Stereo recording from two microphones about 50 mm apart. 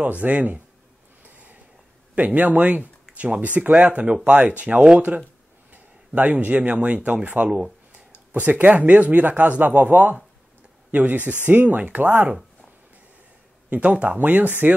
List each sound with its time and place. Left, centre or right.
0.0 s speech: right
1.2 s a sound: right
2.1 s speech: right
5.7 s speech: right
13.7 s speech: right